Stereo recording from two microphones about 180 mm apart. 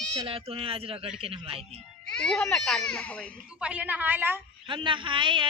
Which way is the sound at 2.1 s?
5° left (ahead or behind).